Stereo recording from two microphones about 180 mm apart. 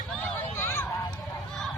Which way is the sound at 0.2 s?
15° left (ahead or behind).